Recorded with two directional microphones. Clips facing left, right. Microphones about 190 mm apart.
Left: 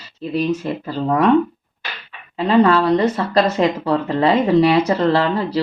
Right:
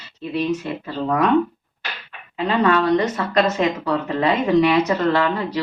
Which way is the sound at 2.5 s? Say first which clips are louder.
Left 4 dB; 30° left (ahead or behind).